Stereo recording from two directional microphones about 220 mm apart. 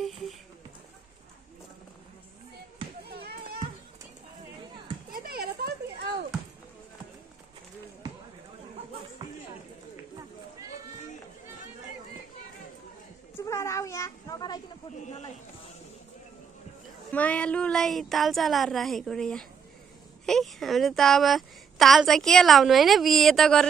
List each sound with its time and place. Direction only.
0.0 s horse: centre (ahead or behind)
3.1 s children playing: 45° right (ahead or behind)
5.1 s a sound: 45° right (ahead or behind)
13.5 s children playing: 15° left (ahead or behind)
17.1 s a woman's voice: 5° left (ahead or behind)